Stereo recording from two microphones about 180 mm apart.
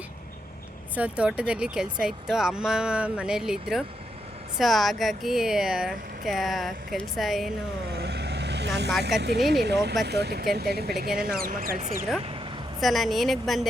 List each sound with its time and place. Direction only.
0.9 s speech: 5° right (ahead or behind)
7.9 s vehicle: 70° right (ahead or behind)
8.9 s speech: centre (ahead or behind)
9.5 s speech: 65° right (ahead or behind)
12.8 s speech: centre (ahead or behind)